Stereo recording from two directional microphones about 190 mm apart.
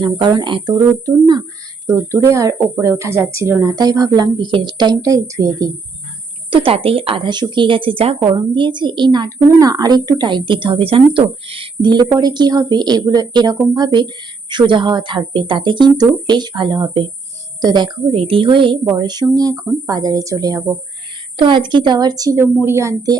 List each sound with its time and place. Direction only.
0.0 s a woman's voice: 25° right (ahead or behind)